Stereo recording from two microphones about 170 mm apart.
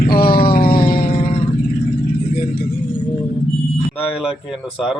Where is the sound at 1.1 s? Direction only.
35° left (ahead or behind).